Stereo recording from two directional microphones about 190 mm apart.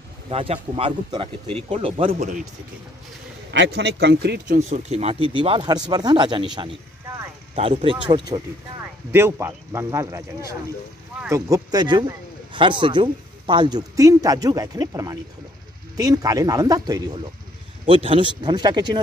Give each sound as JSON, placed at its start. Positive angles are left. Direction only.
{"t": 0.3, "sound": "speech", "side_deg": -30}
{"t": 3.5, "sound": "speech", "side_deg": -65}
{"t": 4.5, "sound": "speech", "side_deg": -40}
{"t": 7.5, "sound": "speech", "side_deg": -30}
{"t": 9.1, "sound": "speech", "side_deg": -15}